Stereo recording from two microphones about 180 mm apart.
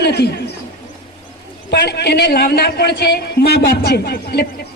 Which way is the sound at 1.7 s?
65° left (ahead or behind).